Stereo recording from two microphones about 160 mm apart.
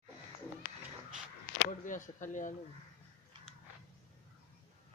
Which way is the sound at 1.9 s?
55° left (ahead or behind).